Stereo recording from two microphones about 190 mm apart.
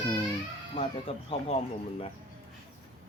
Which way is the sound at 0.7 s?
30° left (ahead or behind).